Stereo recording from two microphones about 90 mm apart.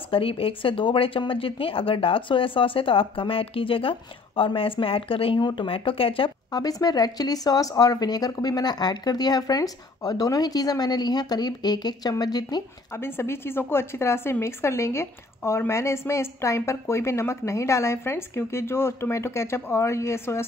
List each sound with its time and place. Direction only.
0.1 s speech: 90° left
5.4 s speech: 50° left (ahead or behind)
5.7 s speech: 90° left
6.5 s speech: 45° left (ahead or behind)
12.9 s speech: 25° left (ahead or behind)